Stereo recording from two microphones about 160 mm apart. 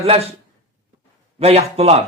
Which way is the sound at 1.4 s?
40° right (ahead or behind).